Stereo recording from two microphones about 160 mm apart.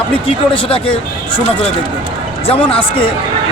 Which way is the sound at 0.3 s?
35° left (ahead or behind).